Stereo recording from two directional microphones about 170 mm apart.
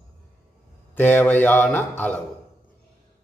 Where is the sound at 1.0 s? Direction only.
10° left (ahead or behind).